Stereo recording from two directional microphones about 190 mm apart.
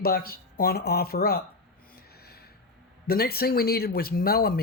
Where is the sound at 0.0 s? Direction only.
55° left (ahead or behind).